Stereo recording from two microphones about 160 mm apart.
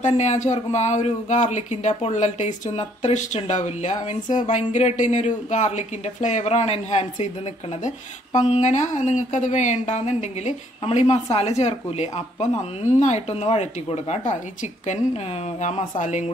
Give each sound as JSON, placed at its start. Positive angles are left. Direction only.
{"t": 0.0, "sound": "speech", "side_deg": 45}
{"t": 8.4, "sound": "speech", "side_deg": 45}
{"t": 15.6, "sound": "speech", "side_deg": 50}